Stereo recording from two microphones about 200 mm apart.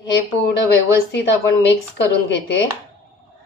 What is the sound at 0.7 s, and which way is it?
A woman's voice, 60° left (ahead or behind).